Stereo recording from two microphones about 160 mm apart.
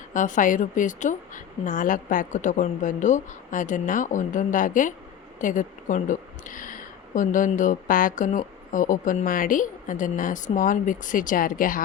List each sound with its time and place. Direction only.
0.1 s a woman's voice: 50° left (ahead or behind)